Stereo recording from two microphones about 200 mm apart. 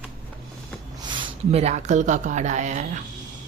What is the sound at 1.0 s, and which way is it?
Speech, 25° right (ahead or behind).